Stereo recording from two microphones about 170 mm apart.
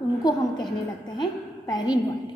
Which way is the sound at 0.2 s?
25° left (ahead or behind).